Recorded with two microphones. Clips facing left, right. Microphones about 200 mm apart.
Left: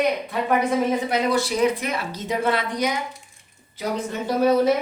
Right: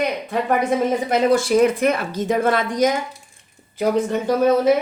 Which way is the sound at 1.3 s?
50° right (ahead or behind).